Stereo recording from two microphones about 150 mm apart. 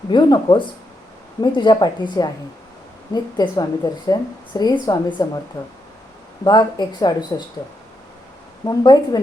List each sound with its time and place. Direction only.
0.1 s speech: 30° left (ahead or behind)
6.4 s speech: 30° left (ahead or behind)
8.6 s speech: 25° left (ahead or behind)